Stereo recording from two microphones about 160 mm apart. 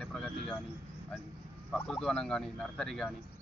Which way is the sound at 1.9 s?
5° left (ahead or behind).